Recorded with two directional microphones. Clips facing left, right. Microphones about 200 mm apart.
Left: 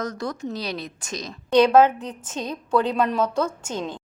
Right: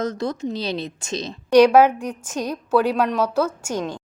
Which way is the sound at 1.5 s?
10° right (ahead or behind).